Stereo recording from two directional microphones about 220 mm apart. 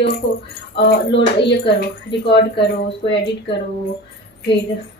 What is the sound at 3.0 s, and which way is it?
Speech, 25° left (ahead or behind).